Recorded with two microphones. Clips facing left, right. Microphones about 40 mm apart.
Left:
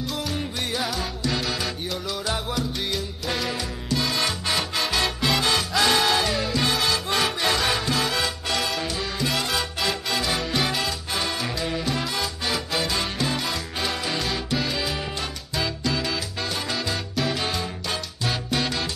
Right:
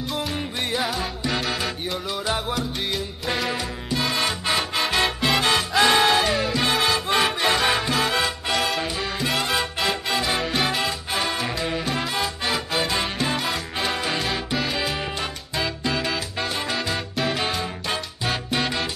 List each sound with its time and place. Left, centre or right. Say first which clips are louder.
0.2 s music: right 1 dB; centre
6.1 s music: right 2 dB; centre
8.5 s music: right 4 dB; centre
8.8 s music: right 1 dB; centre
16.8 s salsa music: right 1 dB; centre
17.3 s music: right 2 dB; centre